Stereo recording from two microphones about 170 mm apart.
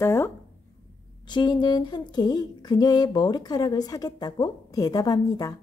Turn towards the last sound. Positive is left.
turn(degrees=20)  # may be behind; listen again after turning